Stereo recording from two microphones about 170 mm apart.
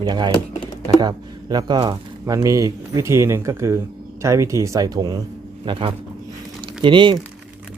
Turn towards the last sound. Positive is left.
turn(degrees=-30)  # may be behind; listen again after turning